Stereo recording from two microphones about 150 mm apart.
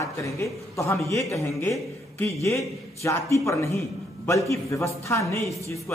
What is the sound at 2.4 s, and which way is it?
A man's voice, 20° left (ahead or behind).